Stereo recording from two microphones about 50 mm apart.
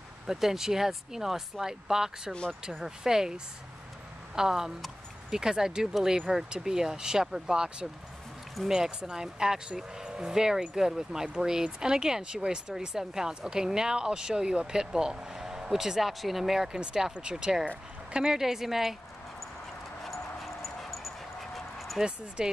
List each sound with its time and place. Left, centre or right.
0.3 s speech: centre
4.4 s speech: centre
20.0 s dog: centre
22.4 s speech: centre